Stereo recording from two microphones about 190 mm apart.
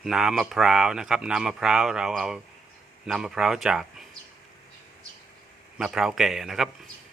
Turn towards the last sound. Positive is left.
turn(degrees=0)  # may be behind; listen again after turning